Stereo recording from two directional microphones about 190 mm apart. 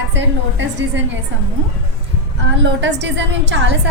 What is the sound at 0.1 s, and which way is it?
Speech, 70° right (ahead or behind).